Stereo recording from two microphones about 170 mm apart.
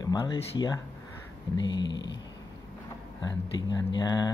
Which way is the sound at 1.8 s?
90° left.